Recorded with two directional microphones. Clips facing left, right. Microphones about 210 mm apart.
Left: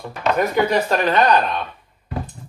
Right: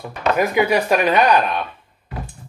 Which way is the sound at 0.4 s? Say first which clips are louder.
Right 1 dB; 10° right (ahead or behind).